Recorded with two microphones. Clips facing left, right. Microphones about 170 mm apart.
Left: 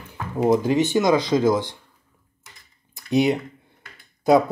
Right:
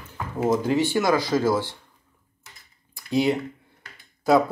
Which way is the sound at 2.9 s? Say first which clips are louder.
Left 3 dB; 20° left (ahead or behind).